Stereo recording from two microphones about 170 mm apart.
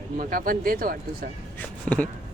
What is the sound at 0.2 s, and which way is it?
Speech, 55° right (ahead or behind).